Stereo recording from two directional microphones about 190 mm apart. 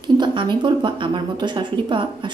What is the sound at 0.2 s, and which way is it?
A woman's voice, 25° right (ahead or behind).